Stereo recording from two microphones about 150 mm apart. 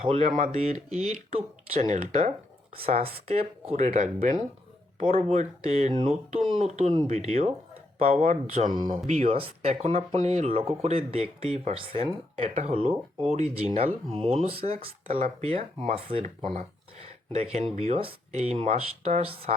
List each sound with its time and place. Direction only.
0.0 s speech: 40° right (ahead or behind)
4.9 s speech: 65° right (ahead or behind)
5.7 s speech: 45° right (ahead or behind)
16.2 s speech: 50° right (ahead or behind)